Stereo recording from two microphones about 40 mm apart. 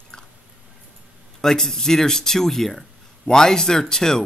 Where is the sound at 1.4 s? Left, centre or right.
Centre.